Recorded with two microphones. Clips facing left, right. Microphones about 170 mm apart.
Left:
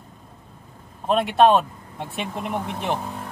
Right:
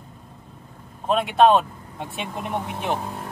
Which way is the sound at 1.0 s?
Centre (ahead or behind).